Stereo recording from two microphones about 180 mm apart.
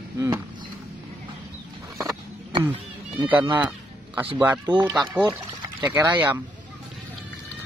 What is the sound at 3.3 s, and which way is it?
Speech, 10° right (ahead or behind).